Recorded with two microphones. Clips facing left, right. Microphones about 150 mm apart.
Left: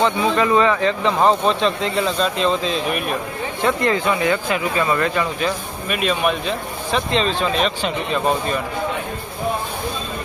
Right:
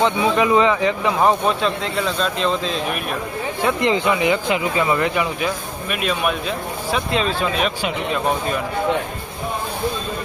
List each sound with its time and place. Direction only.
0.0 s speech: 15° right (ahead or behind)
5.9 s speech: centre (ahead or behind)